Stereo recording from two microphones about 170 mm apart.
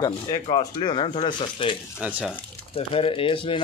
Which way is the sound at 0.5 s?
30° left (ahead or behind).